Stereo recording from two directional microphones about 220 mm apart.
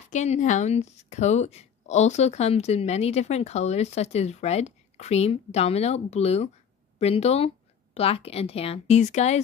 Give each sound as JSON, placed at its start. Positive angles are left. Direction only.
{"t": 0.1, "sound": "speech", "side_deg": 35}